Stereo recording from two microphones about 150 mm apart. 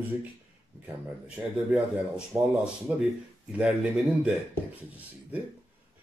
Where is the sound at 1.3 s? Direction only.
10° right (ahead or behind).